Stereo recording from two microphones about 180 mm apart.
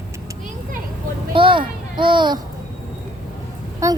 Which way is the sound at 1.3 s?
30° right (ahead or behind).